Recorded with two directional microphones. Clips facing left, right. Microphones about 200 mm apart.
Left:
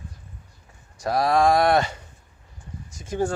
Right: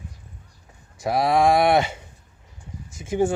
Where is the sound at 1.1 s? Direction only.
20° right (ahead or behind).